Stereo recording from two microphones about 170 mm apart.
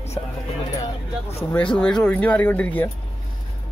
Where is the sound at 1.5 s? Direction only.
5° left (ahead or behind).